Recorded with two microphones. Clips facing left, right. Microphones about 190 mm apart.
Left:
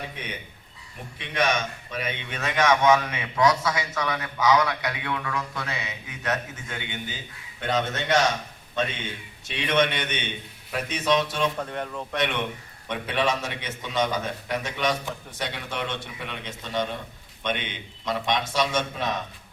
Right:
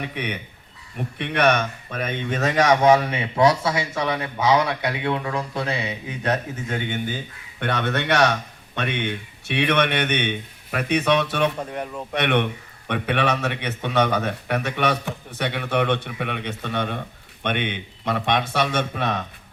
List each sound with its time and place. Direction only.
0.0 s a man's voice: 65° right (ahead or behind); by 7.2 s 45° right (ahead or behind)
7.6 s a man's voice: 65° right (ahead or behind)
11.6 s speech: 10° right (ahead or behind)
12.1 s a man's voice: 65° right (ahead or behind)